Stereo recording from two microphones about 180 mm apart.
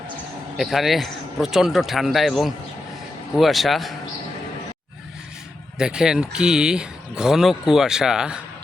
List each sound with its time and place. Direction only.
0.5 s speech: centre (ahead or behind)
5.7 s speech: 5° right (ahead or behind)